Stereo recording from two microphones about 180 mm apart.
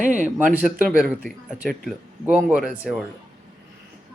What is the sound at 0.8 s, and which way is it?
A man's voice, centre (ahead or behind).